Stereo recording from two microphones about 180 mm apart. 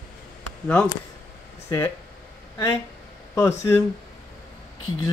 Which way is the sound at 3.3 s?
15° left (ahead or behind).